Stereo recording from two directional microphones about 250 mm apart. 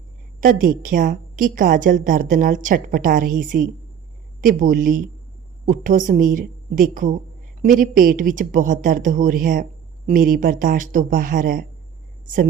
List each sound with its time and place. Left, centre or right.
0.3 s a woman's voice: right